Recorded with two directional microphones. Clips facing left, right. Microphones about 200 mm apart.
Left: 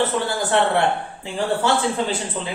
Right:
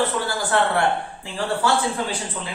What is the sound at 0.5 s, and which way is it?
A man's voice, 25° left (ahead or behind).